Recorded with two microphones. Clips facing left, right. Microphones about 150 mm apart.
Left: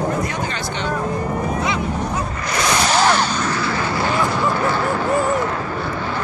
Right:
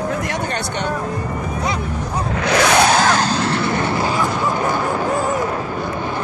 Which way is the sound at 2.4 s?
70° right (ahead or behind).